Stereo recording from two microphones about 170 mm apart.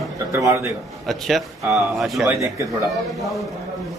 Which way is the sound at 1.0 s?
Centre (ahead or behind).